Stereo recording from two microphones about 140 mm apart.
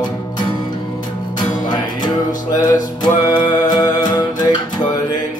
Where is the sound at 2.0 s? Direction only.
30° left (ahead or behind).